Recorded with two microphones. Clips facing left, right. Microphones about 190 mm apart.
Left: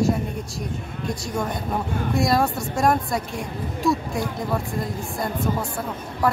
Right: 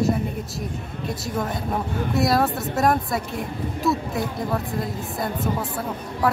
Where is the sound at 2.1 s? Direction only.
5° right (ahead or behind).